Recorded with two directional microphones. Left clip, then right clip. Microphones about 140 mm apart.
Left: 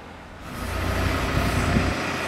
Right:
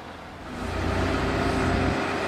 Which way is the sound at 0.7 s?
20° left (ahead or behind).